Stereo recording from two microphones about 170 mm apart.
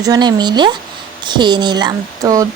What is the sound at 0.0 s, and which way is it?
Speech, 25° right (ahead or behind).